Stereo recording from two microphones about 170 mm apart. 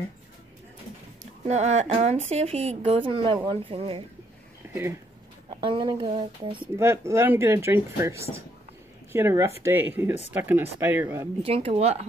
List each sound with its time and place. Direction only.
1.2 s speech: 40° right (ahead or behind)
4.6 s a sound: 15° right (ahead or behind)
5.5 s speech: 30° right (ahead or behind)
6.6 s speech: 15° right (ahead or behind)
11.4 s speech: 35° right (ahead or behind)